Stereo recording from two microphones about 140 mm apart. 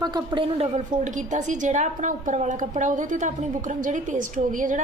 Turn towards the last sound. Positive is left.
turn(degrees=-70)  # may be behind; listen again after turning